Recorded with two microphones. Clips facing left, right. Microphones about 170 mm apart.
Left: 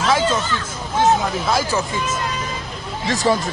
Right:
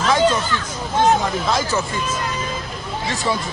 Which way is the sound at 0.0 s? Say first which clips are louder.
Right 2 dB; 5° left (ahead or behind).